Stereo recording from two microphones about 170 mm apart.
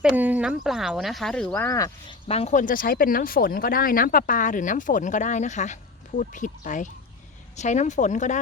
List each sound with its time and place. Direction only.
0.0 s speech: 10° right (ahead or behind); by 2.1 s 20° left (ahead or behind)
2.2 s speech: 35° left (ahead or behind)